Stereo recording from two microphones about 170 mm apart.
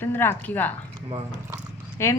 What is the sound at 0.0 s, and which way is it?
Speech, 10° left (ahead or behind).